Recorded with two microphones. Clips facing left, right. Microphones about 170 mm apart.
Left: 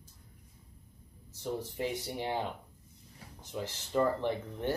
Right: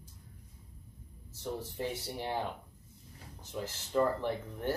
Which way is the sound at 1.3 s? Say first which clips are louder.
Left 2 dB; 15° left (ahead or behind).